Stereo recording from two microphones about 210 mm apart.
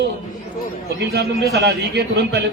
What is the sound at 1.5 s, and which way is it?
Speech, 50° right (ahead or behind).